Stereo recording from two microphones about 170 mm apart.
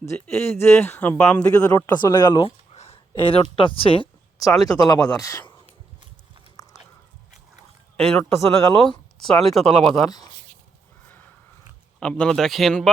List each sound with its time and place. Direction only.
0.0 s speech: 15° left (ahead or behind)
1.5 s speech: 20° left (ahead or behind)
2.7 s a sound: 35° left (ahead or behind)
4.6 s speech: 20° left (ahead or behind)
6.6 s biting: 20° left (ahead or behind)
8.3 s speech: 15° left (ahead or behind)
8.8 s speech: 5° left (ahead or behind)
11.9 s speech: 5° left (ahead or behind)